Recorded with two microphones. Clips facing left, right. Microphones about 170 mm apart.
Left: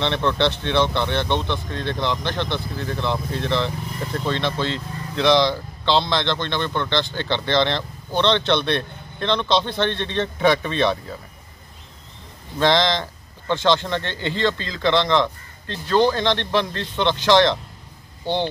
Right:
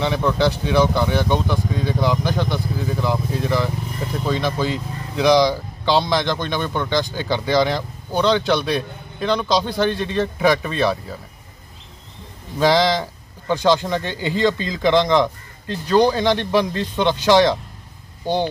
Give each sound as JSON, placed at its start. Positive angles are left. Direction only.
{"t": 0.0, "sound": "speech", "side_deg": -5}
{"t": 12.5, "sound": "speech", "side_deg": -10}